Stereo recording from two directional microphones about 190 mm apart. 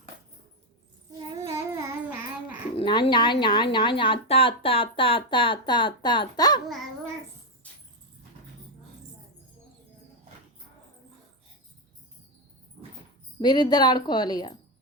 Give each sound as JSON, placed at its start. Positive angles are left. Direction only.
{"t": 1.5, "sound": "child singing", "side_deg": -15}
{"t": 2.7, "sound": "speech", "side_deg": 25}
{"t": 13.4, "sound": "speech", "side_deg": 20}